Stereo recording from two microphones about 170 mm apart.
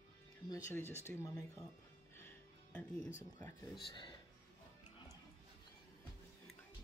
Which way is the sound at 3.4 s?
25° left (ahead or behind).